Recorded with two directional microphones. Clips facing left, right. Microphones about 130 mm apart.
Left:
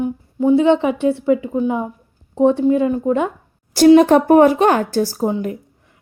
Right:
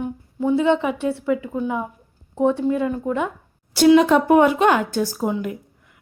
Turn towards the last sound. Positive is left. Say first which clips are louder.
# left 4 dB
turn(degrees=35)  # may be behind; listen again after turning